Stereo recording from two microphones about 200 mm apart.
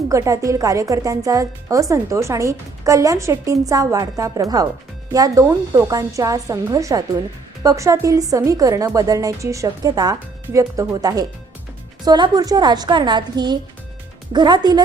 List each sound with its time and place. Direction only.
0.1 s a woman's voice: 15° right (ahead or behind)